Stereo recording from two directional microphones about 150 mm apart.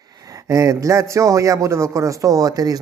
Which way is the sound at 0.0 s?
25° right (ahead or behind).